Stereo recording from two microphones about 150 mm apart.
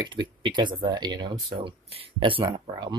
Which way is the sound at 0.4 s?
30° right (ahead or behind).